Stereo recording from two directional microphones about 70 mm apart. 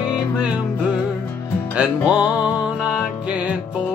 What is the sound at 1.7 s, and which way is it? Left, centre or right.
Music, centre.